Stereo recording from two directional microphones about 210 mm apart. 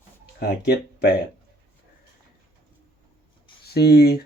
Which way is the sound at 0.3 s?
50° left (ahead or behind).